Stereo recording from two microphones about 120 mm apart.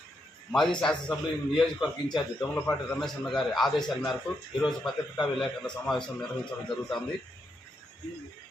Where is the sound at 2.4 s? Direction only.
15° left (ahead or behind).